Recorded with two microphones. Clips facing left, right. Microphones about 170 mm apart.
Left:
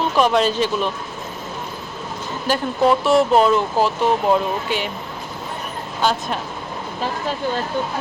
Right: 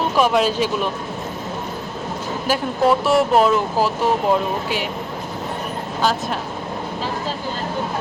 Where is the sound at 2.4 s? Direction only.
5° right (ahead or behind).